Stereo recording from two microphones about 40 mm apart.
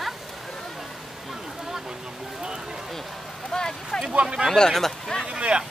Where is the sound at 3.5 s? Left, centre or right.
Centre.